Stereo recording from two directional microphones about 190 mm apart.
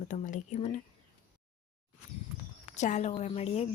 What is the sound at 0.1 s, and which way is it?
Speech, 40° left (ahead or behind).